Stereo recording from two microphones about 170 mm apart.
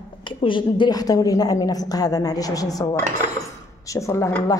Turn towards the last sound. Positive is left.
turn(degrees=15)  # may be behind; listen again after turning